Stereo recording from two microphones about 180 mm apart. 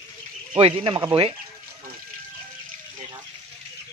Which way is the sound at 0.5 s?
30° right (ahead or behind).